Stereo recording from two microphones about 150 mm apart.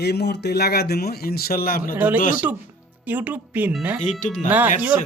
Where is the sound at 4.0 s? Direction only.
55° left (ahead or behind).